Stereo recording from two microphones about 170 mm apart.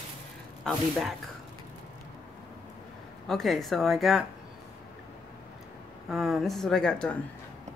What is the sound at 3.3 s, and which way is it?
Speech, centre (ahead or behind).